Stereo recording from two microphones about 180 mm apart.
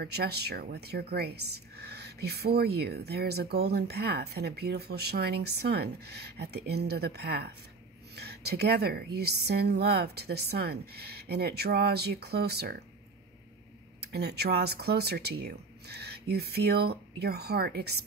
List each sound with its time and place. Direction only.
0.0 s a woman's voice: 60° right (ahead or behind)
14.0 s a woman's voice: 65° right (ahead or behind)